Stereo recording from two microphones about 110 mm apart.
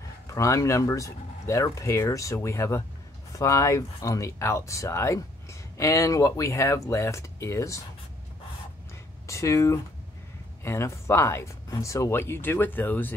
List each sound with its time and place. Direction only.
0.3 s speech: 30° left (ahead or behind)
9.3 s speech: 25° left (ahead or behind)